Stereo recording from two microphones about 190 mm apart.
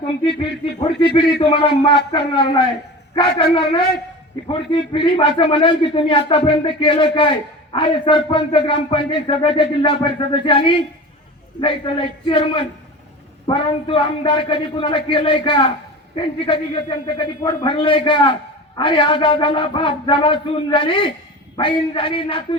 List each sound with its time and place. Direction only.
0.3 s a man's voice: 30° left (ahead or behind)